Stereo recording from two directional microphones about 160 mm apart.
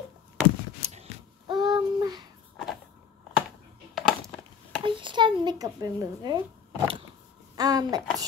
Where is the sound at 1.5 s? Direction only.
25° right (ahead or behind).